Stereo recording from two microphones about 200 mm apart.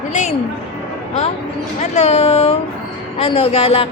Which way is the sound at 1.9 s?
30° left (ahead or behind).